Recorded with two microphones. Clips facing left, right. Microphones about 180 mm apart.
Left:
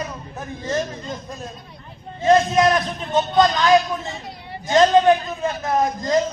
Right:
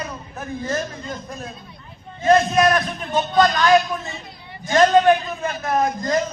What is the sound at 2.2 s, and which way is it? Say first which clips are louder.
A man's voice: even; 20° left (ahead or behind).